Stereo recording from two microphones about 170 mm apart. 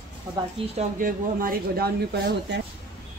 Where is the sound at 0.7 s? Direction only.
50° right (ahead or behind); by 2.6 s 75° right (ahead or behind).